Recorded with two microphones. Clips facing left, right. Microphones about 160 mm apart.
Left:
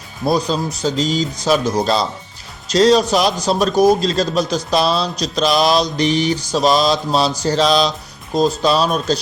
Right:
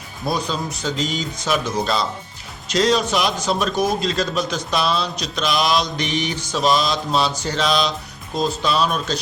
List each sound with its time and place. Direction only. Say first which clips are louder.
0.3 s a man's voice: left 6 dB; 35° left (ahead or behind)